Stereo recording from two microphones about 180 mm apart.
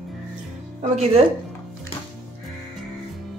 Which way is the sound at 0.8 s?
35° right (ahead or behind).